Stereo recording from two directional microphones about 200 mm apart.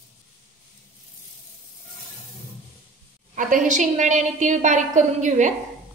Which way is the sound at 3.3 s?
40° right (ahead or behind).